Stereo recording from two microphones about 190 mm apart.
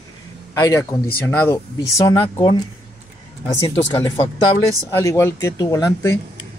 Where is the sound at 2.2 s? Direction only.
25° left (ahead or behind).